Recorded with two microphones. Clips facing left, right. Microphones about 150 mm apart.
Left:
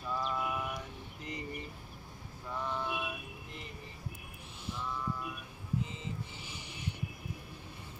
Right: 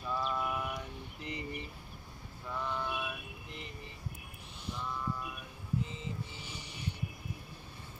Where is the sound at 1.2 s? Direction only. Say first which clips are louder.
Right 1 dB; 40° left (ahead or behind).